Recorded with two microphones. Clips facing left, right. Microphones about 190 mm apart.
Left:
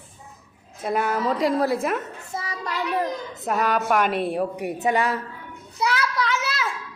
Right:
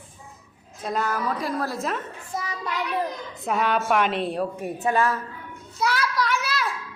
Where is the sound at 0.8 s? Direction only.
15° left (ahead or behind).